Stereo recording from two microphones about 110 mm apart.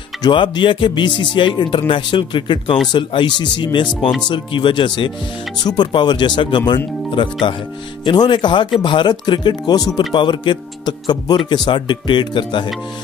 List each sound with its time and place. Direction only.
0.2 s speech: 45° left (ahead or behind)